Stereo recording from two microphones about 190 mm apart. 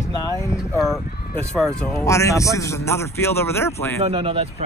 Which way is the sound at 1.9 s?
15° left (ahead or behind).